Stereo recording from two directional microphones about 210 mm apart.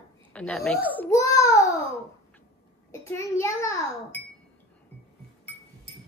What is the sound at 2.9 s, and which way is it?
A child's voice, 15° left (ahead or behind).